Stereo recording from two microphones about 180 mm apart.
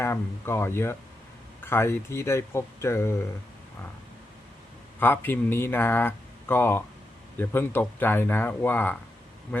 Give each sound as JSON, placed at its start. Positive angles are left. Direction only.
{"t": 0.0, "sound": "speech", "side_deg": 15}
{"t": 4.9, "sound": "speech", "side_deg": 10}